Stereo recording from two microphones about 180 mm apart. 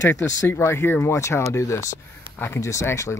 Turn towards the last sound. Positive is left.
turn(degrees=15)  # may be behind; listen again after turning